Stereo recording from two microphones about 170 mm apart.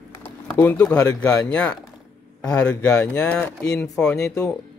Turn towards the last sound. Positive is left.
turn(degrees=5)  # may be behind; listen again after turning